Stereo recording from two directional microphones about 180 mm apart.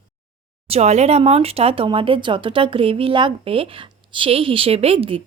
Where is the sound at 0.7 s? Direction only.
40° right (ahead or behind).